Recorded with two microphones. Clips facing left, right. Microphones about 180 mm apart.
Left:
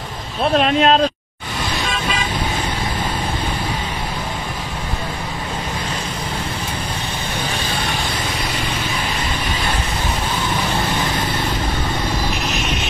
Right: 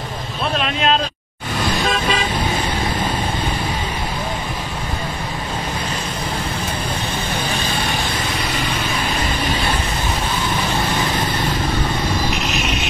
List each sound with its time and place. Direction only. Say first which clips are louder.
0.6 s speech: left 6 dB; 45° left (ahead or behind)